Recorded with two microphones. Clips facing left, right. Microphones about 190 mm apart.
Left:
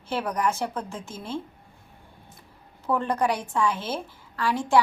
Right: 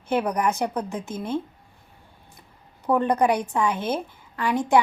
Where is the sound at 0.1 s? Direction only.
20° right (ahead or behind).